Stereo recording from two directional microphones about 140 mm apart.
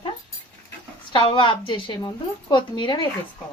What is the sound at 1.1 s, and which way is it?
A woman's voice, 35° left (ahead or behind).